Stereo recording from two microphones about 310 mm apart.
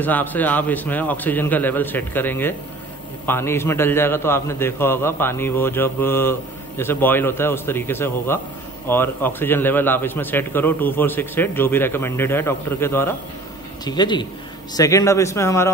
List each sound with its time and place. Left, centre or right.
0.0 s a man's voice: centre